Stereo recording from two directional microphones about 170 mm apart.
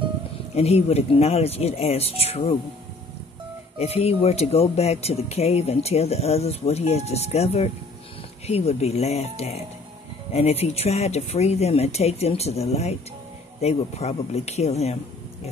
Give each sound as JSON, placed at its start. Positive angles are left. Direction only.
{"t": 0.6, "sound": "speech", "side_deg": 40}
{"t": 3.8, "sound": "speech", "side_deg": 35}